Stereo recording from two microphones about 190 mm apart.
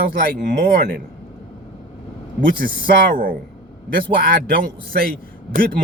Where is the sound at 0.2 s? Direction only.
50° right (ahead or behind).